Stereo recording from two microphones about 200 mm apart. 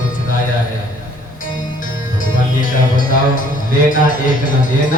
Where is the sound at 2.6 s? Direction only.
40° left (ahead or behind).